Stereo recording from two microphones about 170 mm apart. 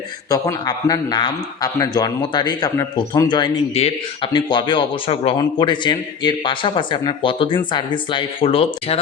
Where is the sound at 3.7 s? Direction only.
35° left (ahead or behind).